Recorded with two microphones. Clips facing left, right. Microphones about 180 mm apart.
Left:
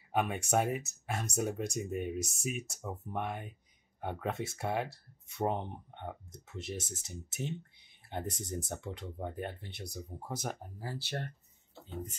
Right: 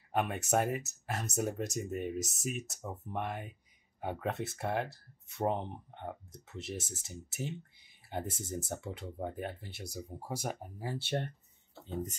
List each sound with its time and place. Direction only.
0.1 s speech: centre (ahead or behind)
10.9 s speech: 25° right (ahead or behind)